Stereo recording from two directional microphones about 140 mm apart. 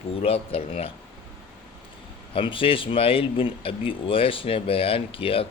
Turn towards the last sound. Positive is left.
turn(degrees=40)  # may be behind; listen again after turning